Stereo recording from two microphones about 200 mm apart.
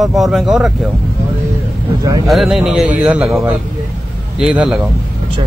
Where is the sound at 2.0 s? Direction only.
15° right (ahead or behind).